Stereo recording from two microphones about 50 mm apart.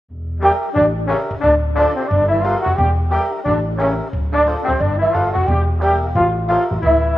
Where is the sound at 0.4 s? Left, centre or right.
Centre.